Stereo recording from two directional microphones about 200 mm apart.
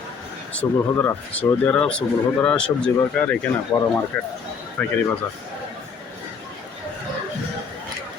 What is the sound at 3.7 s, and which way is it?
Speech, 20° left (ahead or behind).